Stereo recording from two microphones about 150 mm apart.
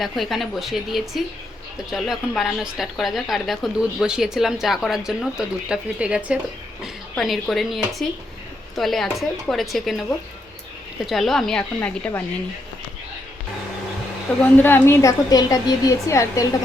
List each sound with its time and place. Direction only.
0.0 s a woman's voice: centre (ahead or behind)
11.0 s a woman's voice: centre (ahead or behind)
14.3 s a woman's voice: 10° left (ahead or behind)